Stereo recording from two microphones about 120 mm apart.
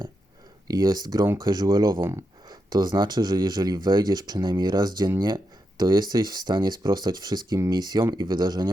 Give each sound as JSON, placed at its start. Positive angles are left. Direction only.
{"t": 0.7, "sound": "speech", "side_deg": -35}